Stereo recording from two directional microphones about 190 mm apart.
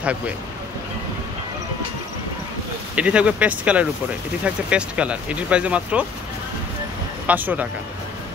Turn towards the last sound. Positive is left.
turn(degrees=-10)  # may be behind; listen again after turning